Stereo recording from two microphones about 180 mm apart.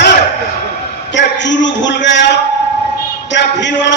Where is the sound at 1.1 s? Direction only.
85° left.